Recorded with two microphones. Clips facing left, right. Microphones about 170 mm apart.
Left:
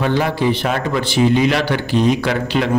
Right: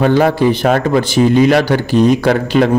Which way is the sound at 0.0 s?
50° right (ahead or behind).